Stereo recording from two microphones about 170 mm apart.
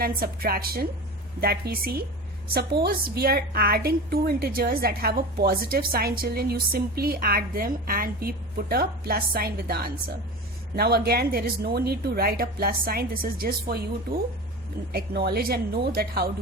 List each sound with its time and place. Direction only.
0.0 s a woman's voice: 60° right (ahead or behind)